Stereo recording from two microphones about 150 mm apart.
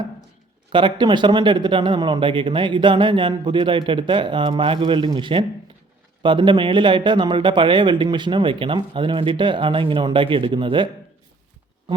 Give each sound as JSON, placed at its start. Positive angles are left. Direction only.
{"t": 0.7, "sound": "speech", "side_deg": -35}